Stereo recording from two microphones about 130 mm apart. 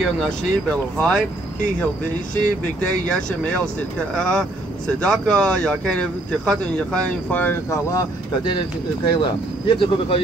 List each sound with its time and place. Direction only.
0.0 s speech: 5° left (ahead or behind)
3.1 s speech: 5° left (ahead or behind)
7.7 s speech: 25° left (ahead or behind)
9.0 s speech: 40° left (ahead or behind)